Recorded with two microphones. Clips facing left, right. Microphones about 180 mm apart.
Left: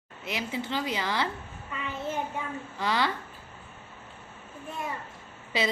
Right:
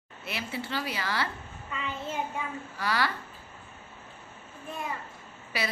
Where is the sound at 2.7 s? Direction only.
20° left (ahead or behind).